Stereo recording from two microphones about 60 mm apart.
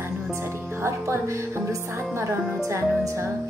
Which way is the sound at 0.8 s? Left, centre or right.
Right.